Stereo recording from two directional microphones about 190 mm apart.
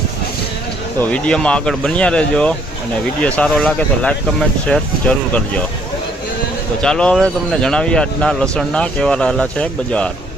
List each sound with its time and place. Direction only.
0.9 s speech: 5° left (ahead or behind)
6.8 s speech: 5° left (ahead or behind)